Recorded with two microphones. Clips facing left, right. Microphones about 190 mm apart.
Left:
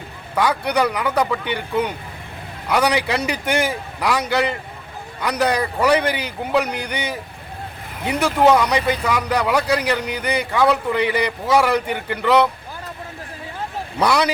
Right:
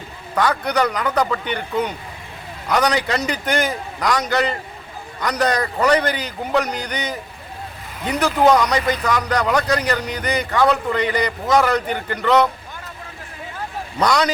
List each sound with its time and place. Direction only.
0.3 s speech: 10° left (ahead or behind)
14.0 s speech: 10° left (ahead or behind)